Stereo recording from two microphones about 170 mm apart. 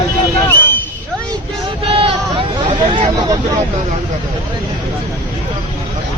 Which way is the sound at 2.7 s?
25° right (ahead or behind).